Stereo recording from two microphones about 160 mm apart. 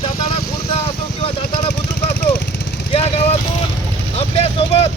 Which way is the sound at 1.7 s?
90° left.